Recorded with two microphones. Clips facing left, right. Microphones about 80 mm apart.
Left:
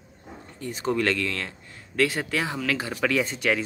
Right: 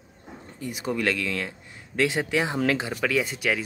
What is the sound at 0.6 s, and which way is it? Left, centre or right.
Speech, centre.